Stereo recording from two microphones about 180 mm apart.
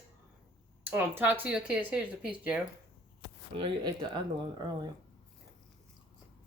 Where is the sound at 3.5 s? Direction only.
25° right (ahead or behind).